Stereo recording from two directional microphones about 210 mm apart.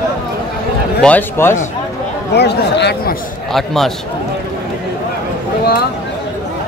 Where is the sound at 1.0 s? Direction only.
10° left (ahead or behind).